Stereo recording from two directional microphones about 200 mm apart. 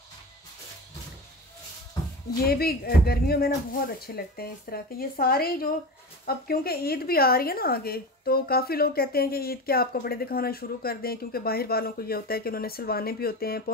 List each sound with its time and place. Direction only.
2.4 s a woman's voice: 50° left (ahead or behind)